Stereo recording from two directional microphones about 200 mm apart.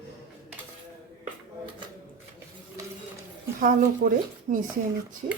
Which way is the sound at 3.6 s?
40° right (ahead or behind).